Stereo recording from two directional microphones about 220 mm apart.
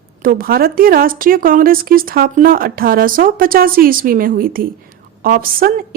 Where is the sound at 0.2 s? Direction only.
40° right (ahead or behind).